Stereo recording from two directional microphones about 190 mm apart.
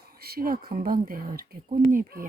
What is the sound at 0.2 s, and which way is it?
Speech, 50° right (ahead or behind).